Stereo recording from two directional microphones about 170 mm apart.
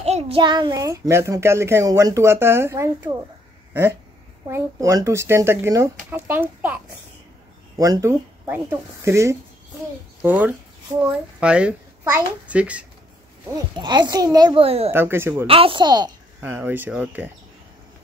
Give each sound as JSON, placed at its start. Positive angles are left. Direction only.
{"t": 0.0, "sound": "a child's voice", "side_deg": -35}
{"t": 4.5, "sound": "a child's voice", "side_deg": -15}
{"t": 13.7, "sound": "a child's voice", "side_deg": -25}
{"t": 14.9, "sound": "a child's voice", "side_deg": -15}
{"t": 15.4, "sound": "a child's voice", "side_deg": -35}
{"t": 16.3, "sound": "a child's voice", "side_deg": -10}